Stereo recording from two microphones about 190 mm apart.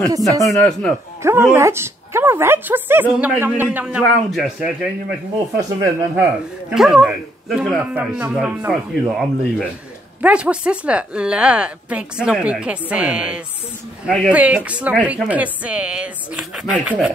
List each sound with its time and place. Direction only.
0.5 s speech: 5° left (ahead or behind)
1.2 s a woman's voice: 10° right (ahead or behind)
5.6 s speech: 20° right (ahead or behind)
6.7 s a woman's voice: 5° right (ahead or behind)